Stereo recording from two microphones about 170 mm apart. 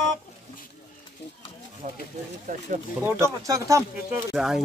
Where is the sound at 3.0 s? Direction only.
15° right (ahead or behind).